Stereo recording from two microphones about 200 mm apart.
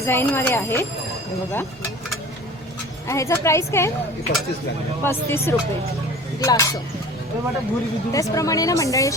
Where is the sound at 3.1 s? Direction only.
15° left (ahead or behind).